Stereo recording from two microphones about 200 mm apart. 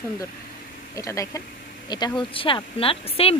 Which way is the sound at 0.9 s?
15° left (ahead or behind).